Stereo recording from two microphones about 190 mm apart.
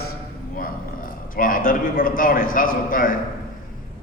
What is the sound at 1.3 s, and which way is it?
A man's voice, 45° left (ahead or behind).